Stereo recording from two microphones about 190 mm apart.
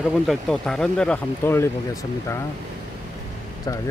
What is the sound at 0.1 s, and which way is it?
Speech, centre (ahead or behind).